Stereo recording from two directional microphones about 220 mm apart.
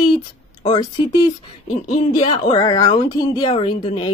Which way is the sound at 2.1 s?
20° left (ahead or behind).